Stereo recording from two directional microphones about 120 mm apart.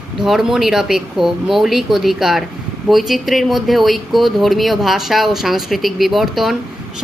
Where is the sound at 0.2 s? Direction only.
Centre (ahead or behind).